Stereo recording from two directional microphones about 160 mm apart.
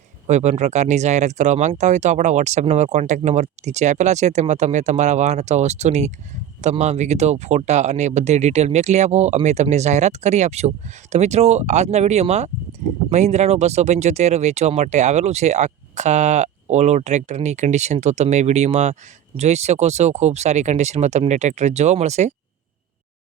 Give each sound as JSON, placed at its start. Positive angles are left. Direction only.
{"t": 0.3, "sound": "speech", "side_deg": -45}